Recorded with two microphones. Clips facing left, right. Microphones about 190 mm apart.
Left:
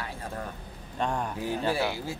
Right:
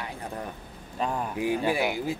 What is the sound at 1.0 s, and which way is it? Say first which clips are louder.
Speech: right 2 dB; 10° right (ahead or behind).